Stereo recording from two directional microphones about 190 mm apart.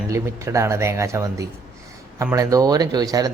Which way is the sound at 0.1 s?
15° right (ahead or behind).